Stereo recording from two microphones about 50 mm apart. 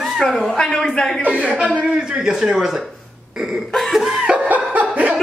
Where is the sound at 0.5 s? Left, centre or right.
Centre.